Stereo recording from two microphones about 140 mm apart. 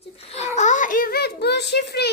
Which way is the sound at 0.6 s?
65° left (ahead or behind).